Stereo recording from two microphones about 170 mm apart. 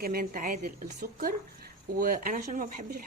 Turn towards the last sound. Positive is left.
turn(degrees=-55)  # may be behind; listen again after turning